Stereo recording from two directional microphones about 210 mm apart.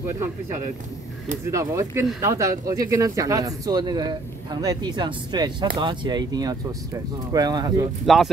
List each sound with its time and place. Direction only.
1.5 s speech: 15° right (ahead or behind)
8.0 s speech: centre (ahead or behind)